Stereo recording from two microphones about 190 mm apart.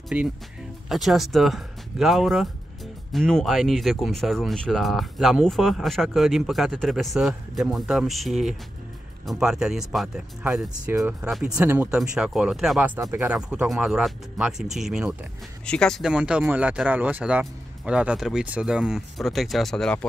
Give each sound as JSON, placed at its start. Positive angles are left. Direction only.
{"t": 0.1, "sound": "speech", "side_deg": -5}